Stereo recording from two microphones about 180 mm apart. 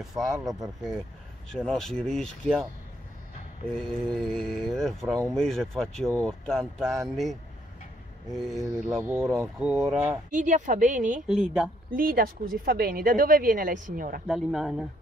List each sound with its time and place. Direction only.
0.0 s speech: centre (ahead or behind)
4.0 s speech: centre (ahead or behind)
9.0 s speech: 15° right (ahead or behind)
10.3 s speech: 45° right (ahead or behind)
11.2 s speech: 5° right (ahead or behind)
11.9 s speech: 55° right (ahead or behind)
14.2 s speech: centre (ahead or behind)